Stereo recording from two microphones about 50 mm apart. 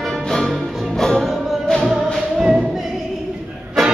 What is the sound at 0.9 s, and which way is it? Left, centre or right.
Music, centre.